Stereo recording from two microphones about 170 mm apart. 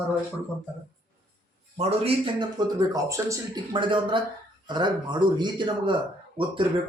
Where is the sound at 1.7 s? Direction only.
40° right (ahead or behind).